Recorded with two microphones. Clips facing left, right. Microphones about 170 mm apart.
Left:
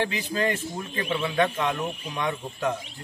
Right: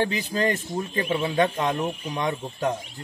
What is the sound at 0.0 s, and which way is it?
Speech, 35° right (ahead or behind).